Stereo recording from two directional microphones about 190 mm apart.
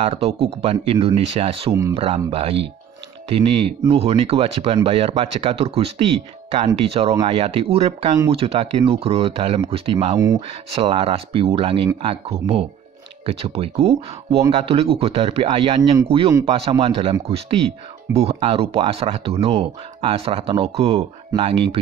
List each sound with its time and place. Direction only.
0.0 s speech: 30° right (ahead or behind)
1.7 s speech: 15° right (ahead or behind)
2.0 s speech: 30° right (ahead or behind)
10.7 s speech: 30° right (ahead or behind)